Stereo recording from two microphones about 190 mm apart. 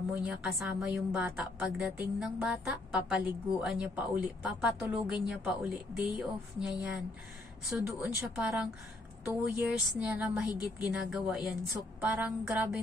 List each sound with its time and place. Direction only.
0.2 s a woman's voice: 5° right (ahead or behind)